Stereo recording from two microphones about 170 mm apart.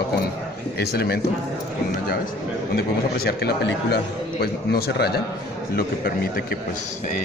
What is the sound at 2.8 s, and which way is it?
A man's voice, 70° left (ahead or behind).